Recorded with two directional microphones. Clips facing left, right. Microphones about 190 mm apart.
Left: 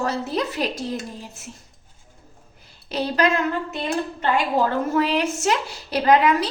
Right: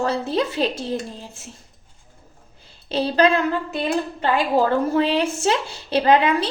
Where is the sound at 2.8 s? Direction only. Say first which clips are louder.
Right 3 dB; 30° right (ahead or behind).